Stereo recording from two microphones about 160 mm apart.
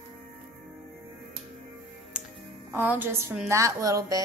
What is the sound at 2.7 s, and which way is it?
A woman's voice, 10° right (ahead or behind).